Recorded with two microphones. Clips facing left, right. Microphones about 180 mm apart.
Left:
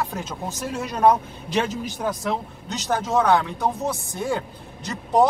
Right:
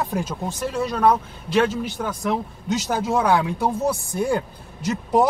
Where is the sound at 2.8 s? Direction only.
10° right (ahead or behind).